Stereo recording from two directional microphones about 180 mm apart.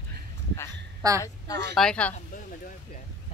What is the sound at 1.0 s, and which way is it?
Speech, 20° right (ahead or behind).